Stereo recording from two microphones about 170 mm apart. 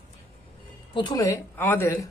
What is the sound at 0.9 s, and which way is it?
Speech, 25° left (ahead or behind).